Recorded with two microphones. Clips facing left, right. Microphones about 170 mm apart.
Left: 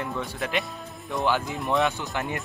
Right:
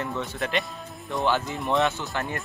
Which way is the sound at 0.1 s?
Centre (ahead or behind).